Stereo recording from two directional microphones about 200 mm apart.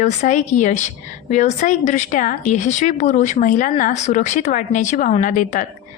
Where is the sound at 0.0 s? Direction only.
40° left (ahead or behind).